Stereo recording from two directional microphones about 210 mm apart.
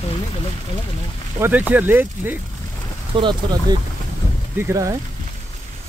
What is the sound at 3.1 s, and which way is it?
Speech, 20° right (ahead or behind).